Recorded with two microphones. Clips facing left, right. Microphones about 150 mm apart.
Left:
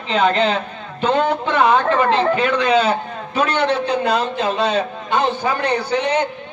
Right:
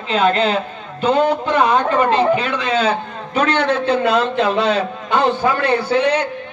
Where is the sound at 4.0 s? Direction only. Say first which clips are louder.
Right 3 dB; 75° right (ahead or behind).